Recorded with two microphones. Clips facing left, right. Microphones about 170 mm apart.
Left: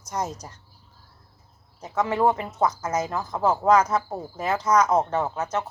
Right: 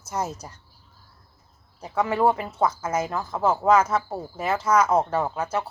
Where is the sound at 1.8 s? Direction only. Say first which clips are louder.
Even; 10° right (ahead or behind).